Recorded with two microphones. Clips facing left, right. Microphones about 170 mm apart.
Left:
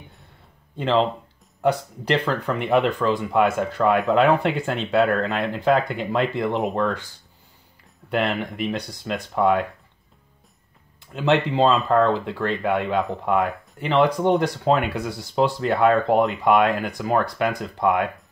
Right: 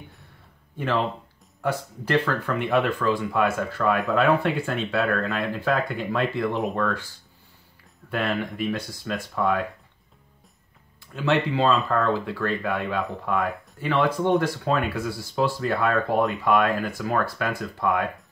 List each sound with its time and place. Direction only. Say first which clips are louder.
0.7 s speech: left 5 dB; 20° left (ahead or behind)
8.6 s speech: left 1 dB; 20° left (ahead or behind)
11.1 s speech: left 3 dB; 20° left (ahead or behind)